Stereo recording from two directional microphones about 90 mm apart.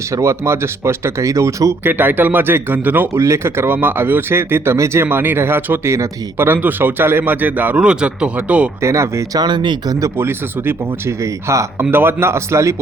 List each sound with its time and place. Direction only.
0.2 s speech: 30° right (ahead or behind)
1.8 s speech: 20° right (ahead or behind)
3.2 s speech: 30° right (ahead or behind); by 8.7 s 15° right (ahead or behind)
8.8 s speech: 35° right (ahead or behind)
9.4 s speech: 55° right (ahead or behind)
10.2 s speech: 25° right (ahead or behind)